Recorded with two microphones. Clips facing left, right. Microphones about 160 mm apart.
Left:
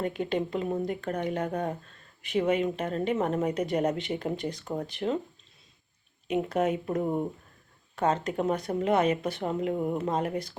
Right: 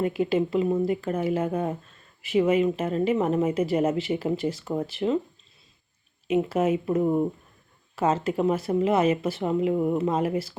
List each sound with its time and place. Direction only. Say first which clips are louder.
0.0 s speech: right 5 dB; 5° right (ahead or behind)
6.2 s speech: right 4 dB; 5° right (ahead or behind)
7.9 s speech: right 3 dB; 5° right (ahead or behind)